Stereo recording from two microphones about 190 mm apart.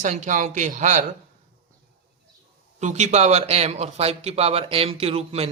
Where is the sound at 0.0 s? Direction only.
40° right (ahead or behind).